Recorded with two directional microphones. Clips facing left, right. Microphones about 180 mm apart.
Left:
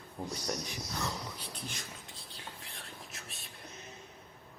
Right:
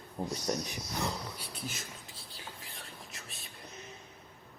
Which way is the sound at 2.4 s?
Centre (ahead or behind).